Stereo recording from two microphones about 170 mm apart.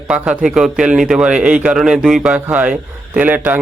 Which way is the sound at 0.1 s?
5° right (ahead or behind).